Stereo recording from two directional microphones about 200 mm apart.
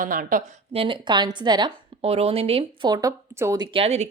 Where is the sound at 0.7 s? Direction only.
25° right (ahead or behind).